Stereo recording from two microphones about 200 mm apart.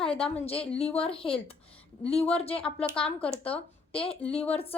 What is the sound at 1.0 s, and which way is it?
Speech, 25° left (ahead or behind).